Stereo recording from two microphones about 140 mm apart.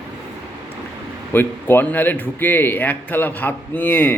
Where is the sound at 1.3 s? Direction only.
15° left (ahead or behind).